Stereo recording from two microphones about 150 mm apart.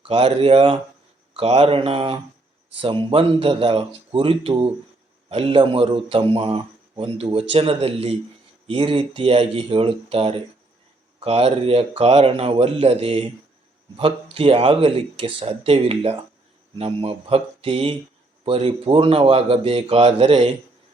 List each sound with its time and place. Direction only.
0.0 s speech: 40° right (ahead or behind)